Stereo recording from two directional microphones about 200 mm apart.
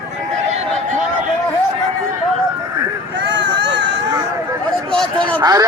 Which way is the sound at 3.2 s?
55° right (ahead or behind).